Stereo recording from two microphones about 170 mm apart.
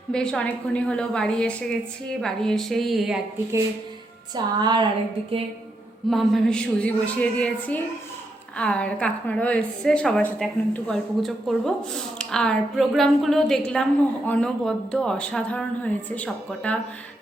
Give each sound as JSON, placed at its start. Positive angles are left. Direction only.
{"t": 0.1, "sound": "a woman's voice", "side_deg": 5}
{"t": 4.4, "sound": "a woman's voice", "side_deg": -25}
{"t": 6.1, "sound": "a woman's voice", "side_deg": 0}